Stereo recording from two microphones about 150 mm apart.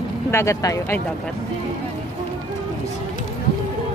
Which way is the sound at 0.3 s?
20° left (ahead or behind).